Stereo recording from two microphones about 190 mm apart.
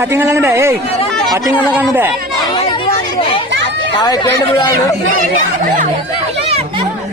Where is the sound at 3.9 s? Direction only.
20° left (ahead or behind).